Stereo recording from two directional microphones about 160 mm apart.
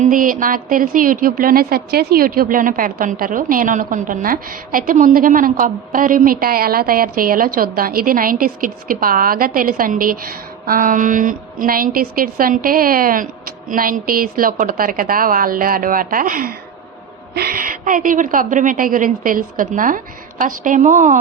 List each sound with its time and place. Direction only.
0.0 s a woman's voice: 60° right (ahead or behind)
17.3 s a woman's voice: 70° right (ahead or behind); by 21.2 s 50° right (ahead or behind)